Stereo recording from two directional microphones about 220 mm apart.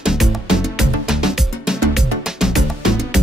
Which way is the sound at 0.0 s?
Centre (ahead or behind).